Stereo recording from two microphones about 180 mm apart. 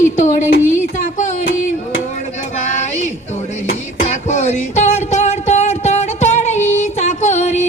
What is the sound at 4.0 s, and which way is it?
Music, 40° left (ahead or behind).